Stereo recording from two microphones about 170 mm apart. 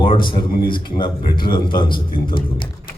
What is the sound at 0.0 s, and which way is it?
A man's voice, 30° left (ahead or behind).